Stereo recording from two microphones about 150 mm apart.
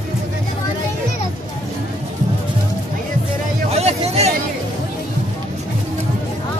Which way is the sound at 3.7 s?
45° right (ahead or behind).